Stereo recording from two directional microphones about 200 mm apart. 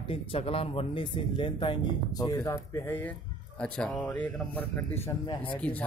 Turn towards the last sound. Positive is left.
turn(degrees=5)  # may be behind; listen again after turning